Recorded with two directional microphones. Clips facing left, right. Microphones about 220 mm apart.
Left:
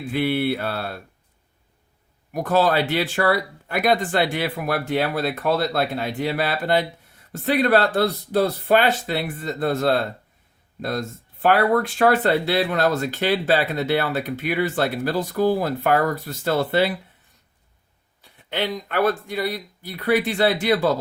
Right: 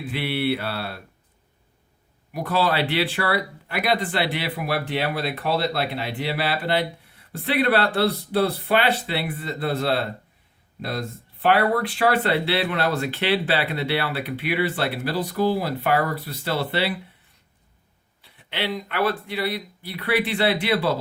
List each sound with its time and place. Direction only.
0.1 s speech: 45° left (ahead or behind)
2.3 s speech: 45° left (ahead or behind)
18.2 s speech: 45° left (ahead or behind)